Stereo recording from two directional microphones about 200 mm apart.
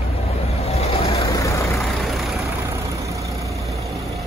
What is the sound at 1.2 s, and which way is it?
Vehicle, 15° left (ahead or behind).